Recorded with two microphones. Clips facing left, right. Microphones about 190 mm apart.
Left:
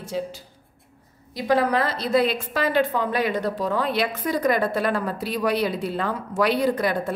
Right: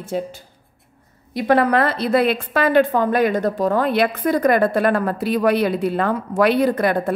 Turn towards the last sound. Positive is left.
turn(degrees=-55)  # may be behind; listen again after turning